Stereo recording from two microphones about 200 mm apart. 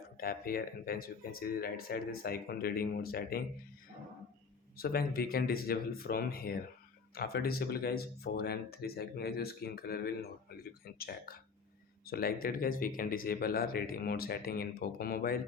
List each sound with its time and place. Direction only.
0.2 s speech: 45° left (ahead or behind)
4.8 s speech: 50° left (ahead or behind)